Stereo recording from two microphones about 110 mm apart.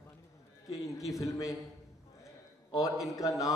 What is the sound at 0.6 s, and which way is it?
Speech, 30° left (ahead or behind).